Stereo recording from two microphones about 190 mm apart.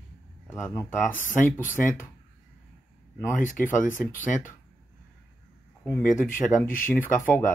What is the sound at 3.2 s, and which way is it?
Speech, 15° left (ahead or behind).